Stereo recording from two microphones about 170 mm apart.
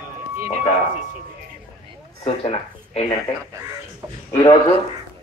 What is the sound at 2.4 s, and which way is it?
Speech, 40° left (ahead or behind).